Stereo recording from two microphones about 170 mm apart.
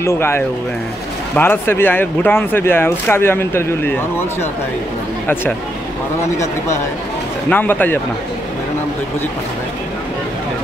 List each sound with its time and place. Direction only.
0.0 s speech: 15° left (ahead or behind)
6.3 s speech: 20° left (ahead or behind)